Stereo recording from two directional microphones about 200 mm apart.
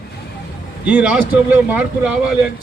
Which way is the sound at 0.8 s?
5° right (ahead or behind).